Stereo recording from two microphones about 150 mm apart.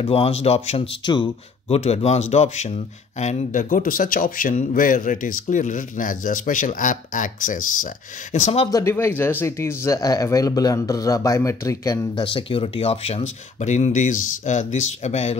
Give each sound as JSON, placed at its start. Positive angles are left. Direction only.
{"t": 0.0, "sound": "speech", "side_deg": 40}
{"t": 1.0, "sound": "speech", "side_deg": 35}
{"t": 8.6, "sound": "speech", "side_deg": 20}
{"t": 12.2, "sound": "speech", "side_deg": 35}